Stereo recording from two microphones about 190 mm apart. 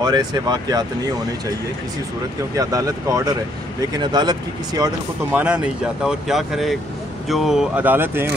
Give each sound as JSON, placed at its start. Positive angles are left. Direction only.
{"t": 0.0, "sound": "speech", "side_deg": -20}
{"t": 2.5, "sound": "speech", "side_deg": -20}
{"t": 5.3, "sound": "speech", "side_deg": -5}